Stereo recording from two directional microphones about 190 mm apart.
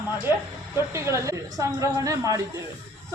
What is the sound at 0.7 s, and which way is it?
A woman's voice, 15° right (ahead or behind).